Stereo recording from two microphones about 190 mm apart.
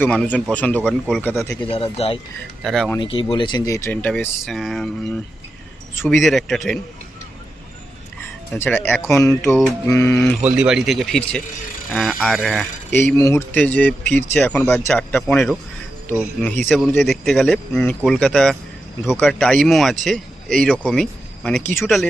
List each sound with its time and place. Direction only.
0.0 s speech: 5° left (ahead or behind)
1.6 s speech: 30° left (ahead or behind)
2.6 s speech: centre (ahead or behind)
3.0 s speech: 30° left (ahead or behind); by 4.9 s centre (ahead or behind)
6.1 s speech: centre (ahead or behind)
8.5 s speech: 10° left (ahead or behind)
10.4 s speech: 5° right (ahead or behind)
16.6 s speech: centre (ahead or behind)